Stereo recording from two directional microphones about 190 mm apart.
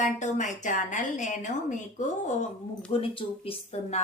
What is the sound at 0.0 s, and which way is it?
Speech, 40° left (ahead or behind).